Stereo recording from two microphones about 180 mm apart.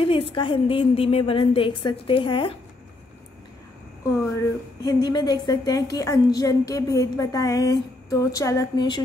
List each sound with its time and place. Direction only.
0.0 s a woman's voice: 30° left (ahead or behind)
4.8 s a woman's voice: 25° left (ahead or behind)